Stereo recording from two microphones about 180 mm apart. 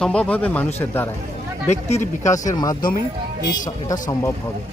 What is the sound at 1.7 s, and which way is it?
Speech, 40° left (ahead or behind).